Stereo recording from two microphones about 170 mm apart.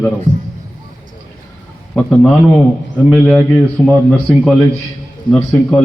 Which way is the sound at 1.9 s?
5° left (ahead or behind).